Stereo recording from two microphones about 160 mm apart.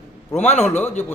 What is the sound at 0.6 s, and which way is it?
Speech, 15° left (ahead or behind).